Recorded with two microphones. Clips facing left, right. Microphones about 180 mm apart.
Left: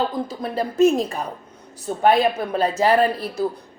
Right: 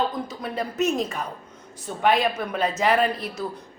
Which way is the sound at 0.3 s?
30° left (ahead or behind).